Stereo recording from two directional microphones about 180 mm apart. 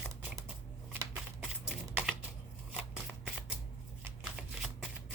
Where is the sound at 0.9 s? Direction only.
10° right (ahead or behind).